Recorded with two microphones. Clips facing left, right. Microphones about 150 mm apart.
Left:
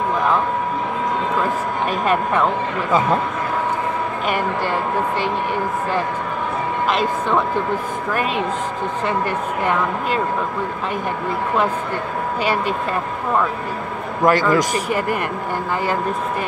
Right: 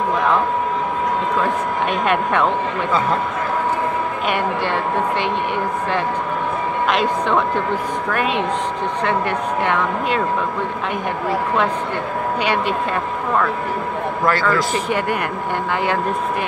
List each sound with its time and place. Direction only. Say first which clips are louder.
1.9 s speech: even; centre (ahead or behind)
8.1 s speech: right 1 dB; 5° left (ahead or behind)
14.2 s a man's voice: left 4 dB; 15° left (ahead or behind)